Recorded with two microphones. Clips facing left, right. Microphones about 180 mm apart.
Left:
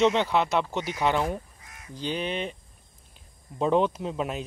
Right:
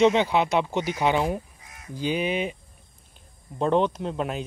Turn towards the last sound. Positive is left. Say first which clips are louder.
# right 2 dB
turn(degrees=0)  # may be behind; listen again after turning